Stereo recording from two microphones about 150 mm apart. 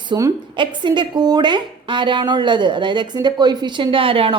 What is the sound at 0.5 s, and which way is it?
A woman's voice, 30° right (ahead or behind).